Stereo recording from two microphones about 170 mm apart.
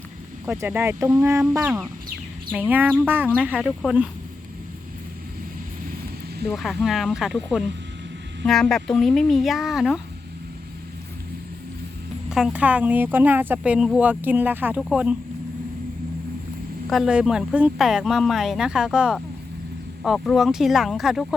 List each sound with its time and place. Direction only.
0.4 s speech: 15° right (ahead or behind)
6.5 s speech: centre (ahead or behind)
12.3 s speech: 5° right (ahead or behind)
16.9 s speech: 5° right (ahead or behind)